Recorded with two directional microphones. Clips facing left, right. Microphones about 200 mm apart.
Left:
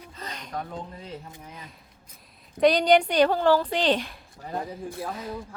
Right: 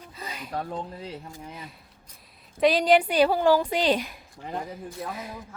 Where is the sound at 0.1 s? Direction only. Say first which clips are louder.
Right 1 dB; 10° right (ahead or behind).